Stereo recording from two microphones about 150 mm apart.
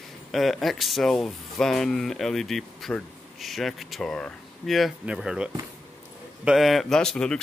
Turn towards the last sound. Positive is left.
turn(degrees=5)  # may be behind; listen again after turning